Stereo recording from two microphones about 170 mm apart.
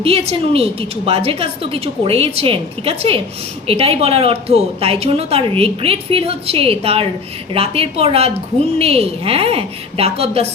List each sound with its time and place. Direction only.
0.0 s a woman's voice: 35° right (ahead or behind)